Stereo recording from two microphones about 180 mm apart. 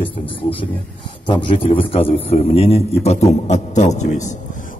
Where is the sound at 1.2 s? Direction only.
25° left (ahead or behind).